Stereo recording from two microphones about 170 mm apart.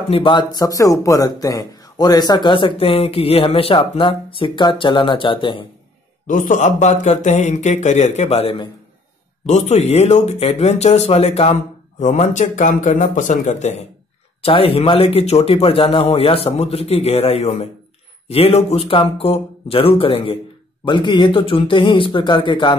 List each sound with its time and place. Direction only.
0.1 s speech: 30° left (ahead or behind)
6.2 s speech: 50° left (ahead or behind); by 22.8 s 30° left (ahead or behind)